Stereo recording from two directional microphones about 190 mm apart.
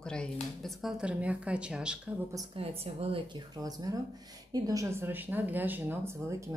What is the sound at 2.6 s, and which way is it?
Speech, 30° right (ahead or behind).